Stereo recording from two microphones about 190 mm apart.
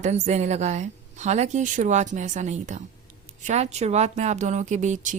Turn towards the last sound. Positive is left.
turn(degrees=-40)  # may be behind; listen again after turning